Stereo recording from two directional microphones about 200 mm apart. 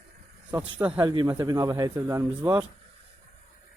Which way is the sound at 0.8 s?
10° right (ahead or behind).